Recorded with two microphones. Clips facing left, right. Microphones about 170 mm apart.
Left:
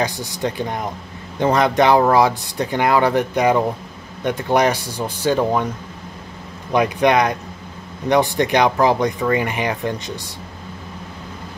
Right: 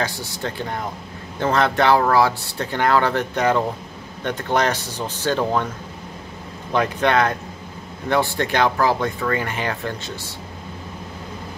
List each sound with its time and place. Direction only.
0.0 s speech: 15° left (ahead or behind)
6.7 s speech: 15° left (ahead or behind)